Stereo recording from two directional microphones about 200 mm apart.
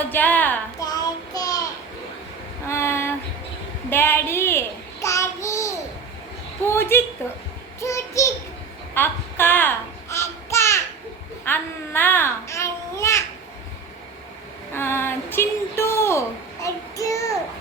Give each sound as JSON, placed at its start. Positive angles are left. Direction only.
{"t": 0.1, "sound": "a sound", "side_deg": 10}
{"t": 0.9, "sound": "child singing", "side_deg": 20}
{"t": 2.6, "sound": "female singing", "side_deg": 15}
{"t": 3.8, "sound": "child singing", "side_deg": 10}
{"t": 6.7, "sound": "a sound", "side_deg": 10}
{"t": 7.8, "sound": "child singing", "side_deg": 15}
{"t": 9.0, "sound": "babbling", "side_deg": 10}
{"t": 14.7, "sound": "a sound", "side_deg": 10}
{"t": 16.6, "sound": "child singing", "side_deg": 15}